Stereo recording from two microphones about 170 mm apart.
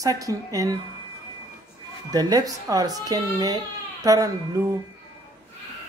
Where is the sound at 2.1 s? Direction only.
20° right (ahead or behind).